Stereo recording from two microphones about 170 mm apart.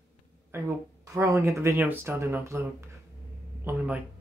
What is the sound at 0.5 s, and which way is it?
Speech, 15° right (ahead or behind).